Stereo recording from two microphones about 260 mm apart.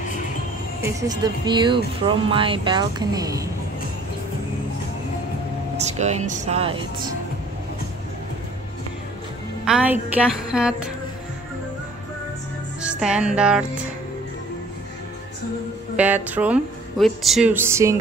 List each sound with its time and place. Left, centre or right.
0.8 s speech: centre
5.8 s speech: right
9.7 s a woman's voice: centre
12.8 s music: centre
16.0 s speech: centre